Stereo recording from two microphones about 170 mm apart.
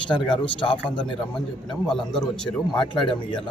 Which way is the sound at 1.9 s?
Centre (ahead or behind).